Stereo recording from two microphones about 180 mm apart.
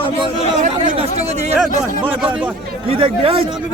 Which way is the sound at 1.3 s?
35° right (ahead or behind).